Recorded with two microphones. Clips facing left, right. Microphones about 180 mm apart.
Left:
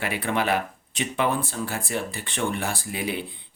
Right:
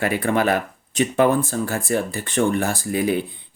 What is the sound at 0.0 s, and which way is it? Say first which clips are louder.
Speech: right 6 dB; 45° right (ahead or behind).